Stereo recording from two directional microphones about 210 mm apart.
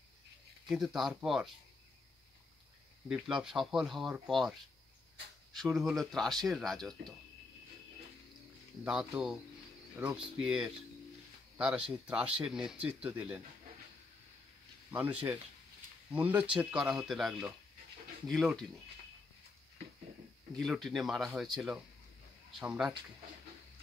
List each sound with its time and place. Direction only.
0.7 s speech: centre (ahead or behind)
3.1 s speech: 5° right (ahead or behind)
8.8 s speech: 5° right (ahead or behind)
14.9 s speech: 10° right (ahead or behind)
20.5 s speech: centre (ahead or behind)